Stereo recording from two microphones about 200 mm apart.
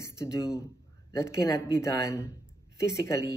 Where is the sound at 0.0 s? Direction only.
15° left (ahead or behind).